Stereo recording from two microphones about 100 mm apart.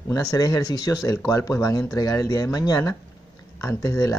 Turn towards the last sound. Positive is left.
turn(degrees=35)  # may be behind; listen again after turning